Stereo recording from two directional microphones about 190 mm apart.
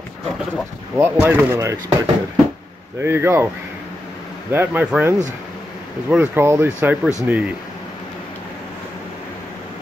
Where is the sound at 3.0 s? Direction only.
10° right (ahead or behind).